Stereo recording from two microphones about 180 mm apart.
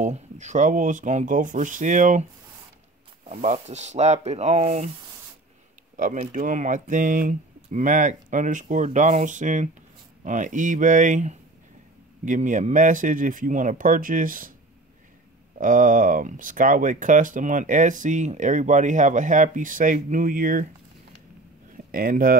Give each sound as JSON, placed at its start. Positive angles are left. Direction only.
{"t": 0.0, "sound": "speech", "side_deg": -40}
{"t": 3.3, "sound": "speech", "side_deg": -35}
{"t": 5.9, "sound": "speech", "side_deg": -45}
{"t": 15.5, "sound": "speech", "side_deg": -45}
{"t": 21.7, "sound": "speech", "side_deg": -50}